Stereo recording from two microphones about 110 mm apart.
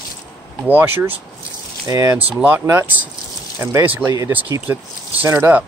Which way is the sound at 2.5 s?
20° right (ahead or behind).